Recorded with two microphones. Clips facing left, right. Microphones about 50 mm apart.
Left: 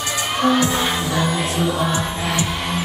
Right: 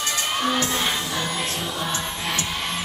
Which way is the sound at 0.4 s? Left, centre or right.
Centre.